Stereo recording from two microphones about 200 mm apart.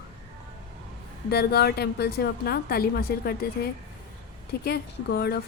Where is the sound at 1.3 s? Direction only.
55° left (ahead or behind).